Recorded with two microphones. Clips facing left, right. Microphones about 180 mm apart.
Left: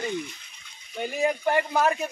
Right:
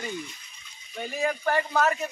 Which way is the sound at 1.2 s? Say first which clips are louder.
Left 2 dB; 15° left (ahead or behind).